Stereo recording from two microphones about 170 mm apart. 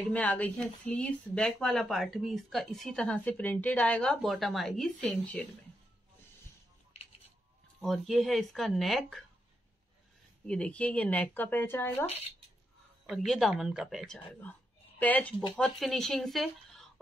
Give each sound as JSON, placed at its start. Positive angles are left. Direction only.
{"t": 0.1, "sound": "speech", "side_deg": 10}
{"t": 6.9, "sound": "typewriter", "side_deg": 35}
{"t": 7.8, "sound": "speech", "side_deg": 0}
{"t": 10.4, "sound": "speech", "side_deg": 5}
{"t": 13.0, "sound": "speech", "side_deg": 0}